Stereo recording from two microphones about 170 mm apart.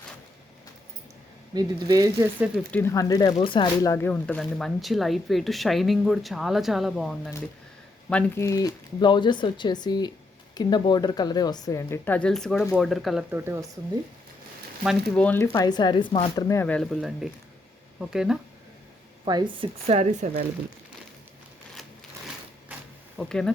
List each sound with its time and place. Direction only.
1.5 s speech: 20° right (ahead or behind)
2.7 s speech: 15° left (ahead or behind)
3.9 s speech: 10° left (ahead or behind)
8.1 s a woman's voice: 15° left (ahead or behind); by 13.2 s centre (ahead or behind)
13.3 s speech: 15° right (ahead or behind)
15.1 s a woman's voice: 10° left (ahead or behind)
15.5 s speech: 25° left (ahead or behind)
16.6 s speech: 5° left (ahead or behind)
19.2 s speech: 25° right (ahead or behind)
23.1 s speech: 5° left (ahead or behind)